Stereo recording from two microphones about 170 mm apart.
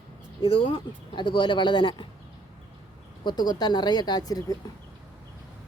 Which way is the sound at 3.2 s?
25° left (ahead or behind).